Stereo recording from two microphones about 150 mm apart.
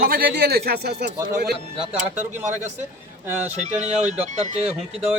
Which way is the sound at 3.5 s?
50° right (ahead or behind).